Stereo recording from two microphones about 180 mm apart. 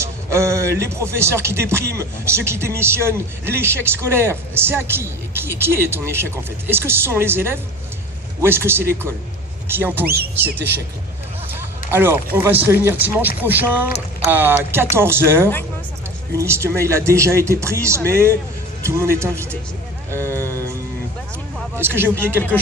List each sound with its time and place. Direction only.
0.0 s music: 15° right (ahead or behind)
11.5 s a sound: 10° right (ahead or behind)
12.4 s music: 10° right (ahead or behind)
21.8 s music: 10° right (ahead or behind)